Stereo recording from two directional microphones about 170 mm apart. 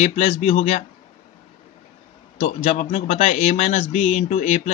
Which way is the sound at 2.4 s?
45° left (ahead or behind).